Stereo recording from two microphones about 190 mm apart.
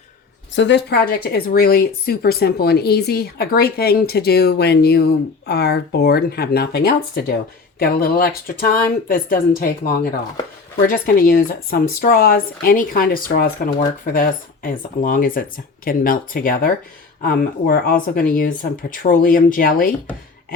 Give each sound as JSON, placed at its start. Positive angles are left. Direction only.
{"t": 0.5, "sound": "speech", "side_deg": 70}